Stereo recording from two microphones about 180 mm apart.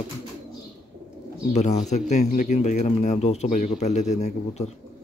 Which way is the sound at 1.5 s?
40° left (ahead or behind).